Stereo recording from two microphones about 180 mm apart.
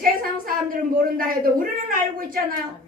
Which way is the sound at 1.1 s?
50° right (ahead or behind).